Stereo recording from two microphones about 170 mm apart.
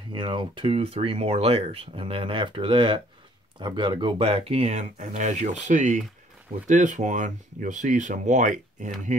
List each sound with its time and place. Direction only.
0.1 s speech: 30° right (ahead or behind); by 8.9 s 50° right (ahead or behind)